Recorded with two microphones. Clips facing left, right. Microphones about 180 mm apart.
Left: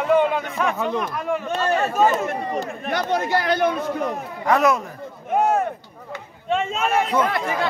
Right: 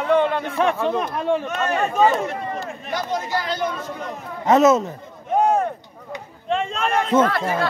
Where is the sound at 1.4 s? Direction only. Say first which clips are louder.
Left 1 dB; 30° left (ahead or behind).